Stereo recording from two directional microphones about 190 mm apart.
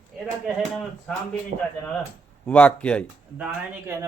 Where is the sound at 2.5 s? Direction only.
5° left (ahead or behind).